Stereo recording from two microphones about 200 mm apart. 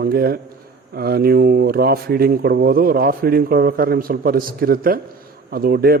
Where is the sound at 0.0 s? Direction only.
50° right (ahead or behind).